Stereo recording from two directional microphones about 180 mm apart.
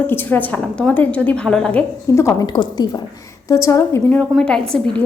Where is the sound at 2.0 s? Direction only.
15° left (ahead or behind).